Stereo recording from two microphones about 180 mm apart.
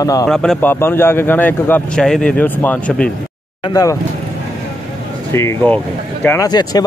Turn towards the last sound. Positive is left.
turn(degrees=20)  # may be behind; listen again after turning